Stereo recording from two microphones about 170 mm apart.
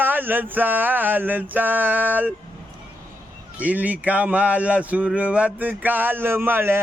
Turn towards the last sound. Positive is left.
turn(degrees=-15)  # may be behind; listen again after turning